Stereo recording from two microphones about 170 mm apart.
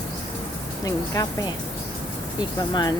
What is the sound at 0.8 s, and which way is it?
Speech, 20° left (ahead or behind).